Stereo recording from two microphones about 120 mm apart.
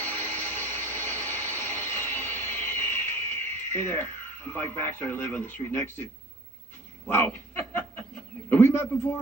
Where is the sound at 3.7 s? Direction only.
20° left (ahead or behind).